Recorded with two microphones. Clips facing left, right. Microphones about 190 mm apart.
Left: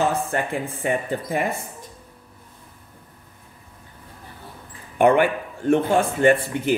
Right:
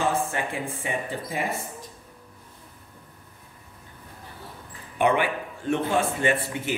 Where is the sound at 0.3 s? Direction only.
50° left (ahead or behind).